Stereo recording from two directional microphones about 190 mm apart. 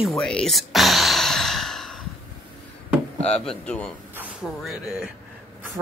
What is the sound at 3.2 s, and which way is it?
Speech, 5° left (ahead or behind).